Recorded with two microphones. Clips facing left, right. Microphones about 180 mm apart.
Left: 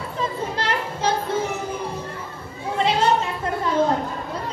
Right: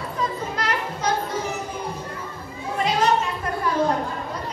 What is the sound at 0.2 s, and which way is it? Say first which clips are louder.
Children playing: left 1 dB; 30° left (ahead or behind).